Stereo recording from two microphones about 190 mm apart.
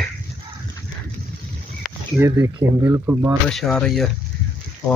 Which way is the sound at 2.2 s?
15° right (ahead or behind).